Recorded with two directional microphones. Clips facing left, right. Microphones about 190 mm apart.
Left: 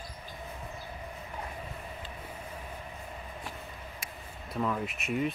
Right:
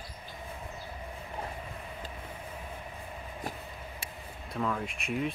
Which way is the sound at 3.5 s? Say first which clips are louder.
Right 2 dB; 40° right (ahead or behind).